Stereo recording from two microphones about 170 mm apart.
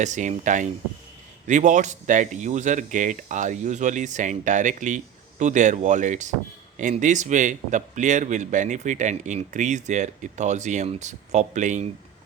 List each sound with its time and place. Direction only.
0.0 s speech: 45° right (ahead or behind)